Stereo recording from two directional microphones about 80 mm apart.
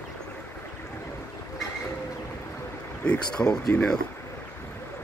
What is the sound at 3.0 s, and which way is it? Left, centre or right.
Speech, centre.